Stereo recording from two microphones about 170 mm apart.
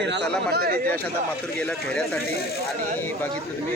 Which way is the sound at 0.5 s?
60° right (ahead or behind).